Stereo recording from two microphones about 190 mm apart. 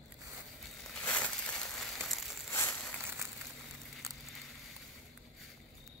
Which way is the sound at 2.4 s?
15° left (ahead or behind).